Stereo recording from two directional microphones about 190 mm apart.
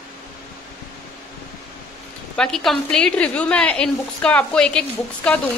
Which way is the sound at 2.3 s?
5° left (ahead or behind).